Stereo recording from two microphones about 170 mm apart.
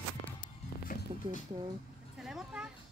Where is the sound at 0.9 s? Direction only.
55° left (ahead or behind).